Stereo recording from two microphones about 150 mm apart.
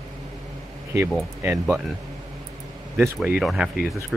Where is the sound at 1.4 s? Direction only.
20° right (ahead or behind).